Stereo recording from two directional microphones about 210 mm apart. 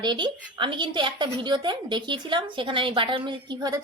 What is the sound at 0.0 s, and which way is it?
A woman's voice, 20° right (ahead or behind).